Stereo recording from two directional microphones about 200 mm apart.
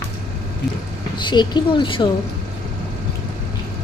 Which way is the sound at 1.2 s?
20° left (ahead or behind).